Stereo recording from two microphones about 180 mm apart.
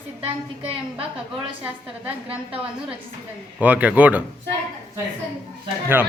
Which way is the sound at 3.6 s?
10° right (ahead or behind).